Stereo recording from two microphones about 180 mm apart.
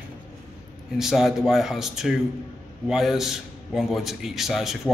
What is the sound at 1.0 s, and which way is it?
A man's voice, centre (ahead or behind).